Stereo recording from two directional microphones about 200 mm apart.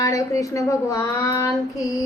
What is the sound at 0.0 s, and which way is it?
A woman's voice, 15° left (ahead or behind).